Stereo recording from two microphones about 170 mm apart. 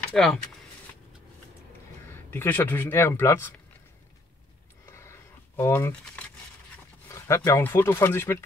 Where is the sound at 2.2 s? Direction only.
10° left (ahead or behind).